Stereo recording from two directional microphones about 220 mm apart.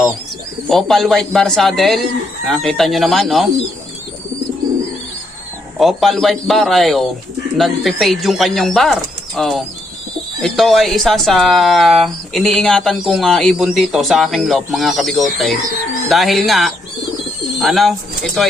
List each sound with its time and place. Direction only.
0.7 s speech: centre (ahead or behind)
5.8 s speech: centre (ahead or behind)